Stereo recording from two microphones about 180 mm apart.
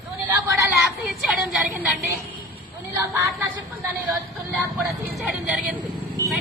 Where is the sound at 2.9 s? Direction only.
15° right (ahead or behind).